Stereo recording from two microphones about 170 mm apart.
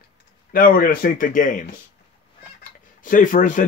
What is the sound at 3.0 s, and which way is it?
Speech, 50° left (ahead or behind).